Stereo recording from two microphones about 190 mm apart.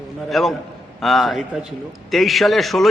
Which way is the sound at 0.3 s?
Centre (ahead or behind).